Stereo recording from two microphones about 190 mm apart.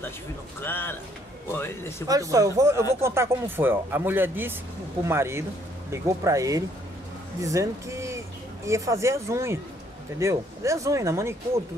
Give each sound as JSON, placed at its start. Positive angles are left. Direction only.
{"t": 0.6, "sound": "a man's voice", "side_deg": 10}
{"t": 2.0, "sound": "speech", "side_deg": -15}